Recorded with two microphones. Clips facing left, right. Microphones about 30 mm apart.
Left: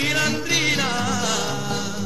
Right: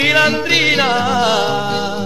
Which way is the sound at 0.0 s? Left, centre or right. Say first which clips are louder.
Right 9 dB; right.